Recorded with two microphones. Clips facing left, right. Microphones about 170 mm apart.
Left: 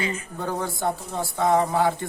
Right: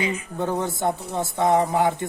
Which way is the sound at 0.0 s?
20° right (ahead or behind).